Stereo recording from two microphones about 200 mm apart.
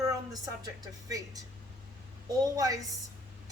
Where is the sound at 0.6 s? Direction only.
15° right (ahead or behind).